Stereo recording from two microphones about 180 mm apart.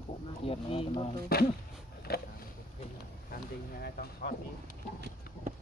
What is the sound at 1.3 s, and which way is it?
Speech, 55° left (ahead or behind).